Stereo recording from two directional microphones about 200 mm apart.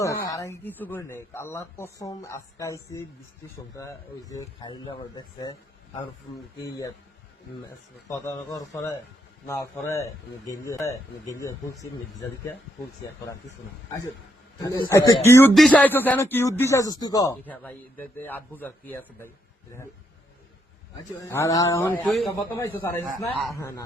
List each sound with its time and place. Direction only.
0.0 s a man's voice: 15° left (ahead or behind)
6.6 s a man's voice: 15° left (ahead or behind)
8.0 s a man's voice: 15° left (ahead or behind)
14.6 s a man's voice: 15° left (ahead or behind)
21.2 s a man's voice: 15° left (ahead or behind)
22.3 s a man's voice: 15° left (ahead or behind)